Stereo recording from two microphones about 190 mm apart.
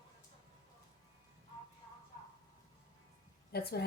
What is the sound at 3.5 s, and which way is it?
Speech, 55° left (ahead or behind).